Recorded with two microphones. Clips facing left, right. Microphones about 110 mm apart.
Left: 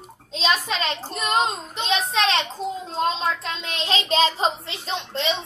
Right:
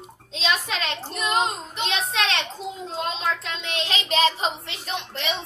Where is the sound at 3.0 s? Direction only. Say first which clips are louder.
Left 4 dB; 35° left (ahead or behind).